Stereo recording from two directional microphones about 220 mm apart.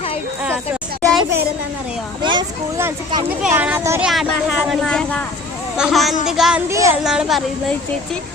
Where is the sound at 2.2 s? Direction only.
20° right (ahead or behind).